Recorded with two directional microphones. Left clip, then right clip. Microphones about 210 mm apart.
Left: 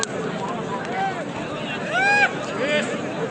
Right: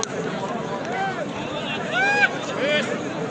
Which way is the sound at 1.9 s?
40° left (ahead or behind).